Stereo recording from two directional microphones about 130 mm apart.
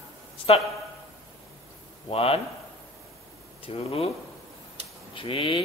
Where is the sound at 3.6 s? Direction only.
50° left (ahead or behind).